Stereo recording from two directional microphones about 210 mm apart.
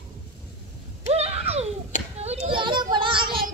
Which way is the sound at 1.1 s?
30° right (ahead or behind).